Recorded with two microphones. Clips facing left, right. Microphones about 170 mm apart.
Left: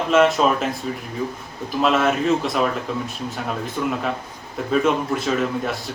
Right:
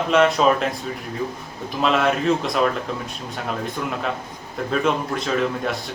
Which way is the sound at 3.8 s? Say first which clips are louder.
Left 2 dB; 5° left (ahead or behind).